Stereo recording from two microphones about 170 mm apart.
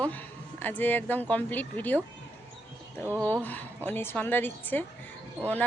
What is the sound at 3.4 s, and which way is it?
Speech, 10° left (ahead or behind).